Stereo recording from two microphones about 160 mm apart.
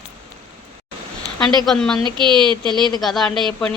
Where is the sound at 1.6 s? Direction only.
5° left (ahead or behind).